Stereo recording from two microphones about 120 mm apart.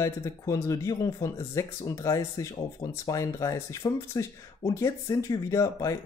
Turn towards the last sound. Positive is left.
turn(degrees=25)  # may be behind; listen again after turning